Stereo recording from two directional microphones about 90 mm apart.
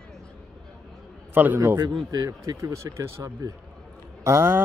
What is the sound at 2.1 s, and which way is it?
Speech, 45° right (ahead or behind).